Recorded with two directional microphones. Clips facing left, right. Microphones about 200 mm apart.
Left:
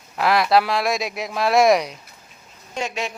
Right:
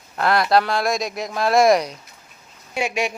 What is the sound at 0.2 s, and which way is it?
Speech, centre (ahead or behind).